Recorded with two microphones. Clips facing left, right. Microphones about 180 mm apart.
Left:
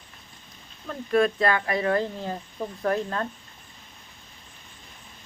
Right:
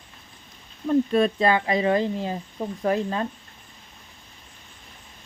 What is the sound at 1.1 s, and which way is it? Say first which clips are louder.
Speech: right 2 dB; 25° right (ahead or behind).